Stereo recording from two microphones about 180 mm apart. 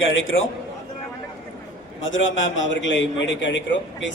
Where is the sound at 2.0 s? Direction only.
90° left.